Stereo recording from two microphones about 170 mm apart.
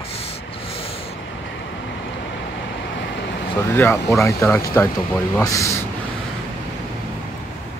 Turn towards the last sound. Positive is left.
turn(degrees=15)  # may be behind; listen again after turning